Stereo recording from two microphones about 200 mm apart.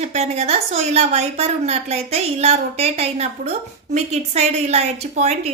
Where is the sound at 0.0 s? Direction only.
35° right (ahead or behind).